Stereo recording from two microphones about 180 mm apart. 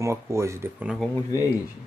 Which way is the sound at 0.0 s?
15° right (ahead or behind).